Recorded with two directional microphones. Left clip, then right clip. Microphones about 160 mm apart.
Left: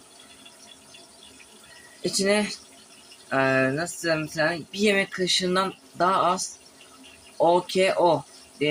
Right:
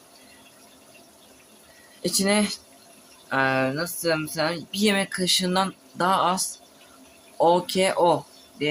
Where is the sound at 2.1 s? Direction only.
10° right (ahead or behind).